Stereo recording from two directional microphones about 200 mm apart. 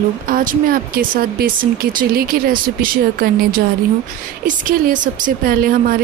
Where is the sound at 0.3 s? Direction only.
45° right (ahead or behind).